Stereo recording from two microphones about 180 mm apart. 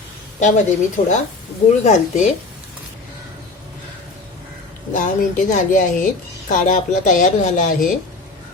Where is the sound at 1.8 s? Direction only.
40° left (ahead or behind).